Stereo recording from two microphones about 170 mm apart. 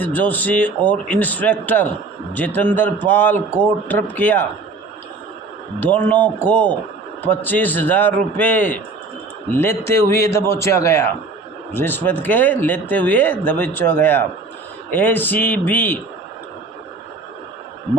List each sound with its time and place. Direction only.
0.0 s speech: 10° left (ahead or behind)
5.8 s speech: 10° left (ahead or behind)